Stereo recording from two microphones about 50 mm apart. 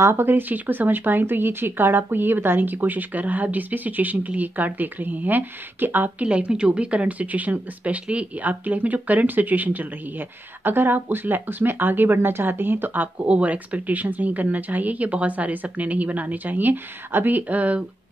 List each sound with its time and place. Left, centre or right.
0.0 s a woman's voice: right
6.2 s a woman's voice: right
13.3 s a woman's voice: right